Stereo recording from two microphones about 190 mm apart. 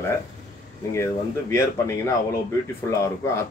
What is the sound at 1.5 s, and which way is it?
Speech, 15° left (ahead or behind).